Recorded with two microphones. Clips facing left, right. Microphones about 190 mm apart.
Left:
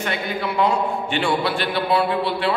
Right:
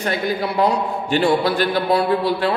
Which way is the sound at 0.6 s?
40° right (ahead or behind).